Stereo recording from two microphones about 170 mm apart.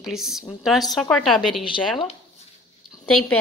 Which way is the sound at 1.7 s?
30° left (ahead or behind).